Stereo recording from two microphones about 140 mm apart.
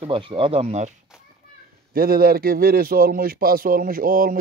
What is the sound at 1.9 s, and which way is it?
Speech, 90° right.